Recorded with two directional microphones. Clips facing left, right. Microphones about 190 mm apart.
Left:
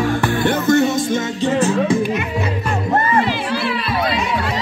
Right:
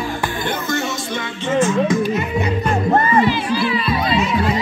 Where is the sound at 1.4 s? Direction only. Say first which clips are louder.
Right 1 dB; 35° left (ahead or behind).